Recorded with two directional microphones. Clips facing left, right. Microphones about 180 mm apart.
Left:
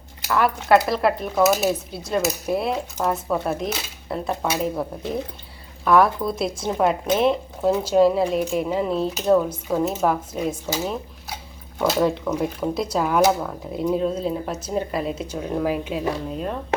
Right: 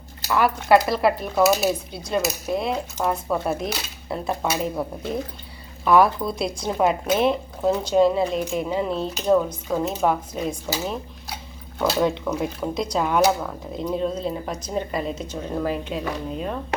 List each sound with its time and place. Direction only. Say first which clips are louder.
0.3 s speech: even; centre (ahead or behind)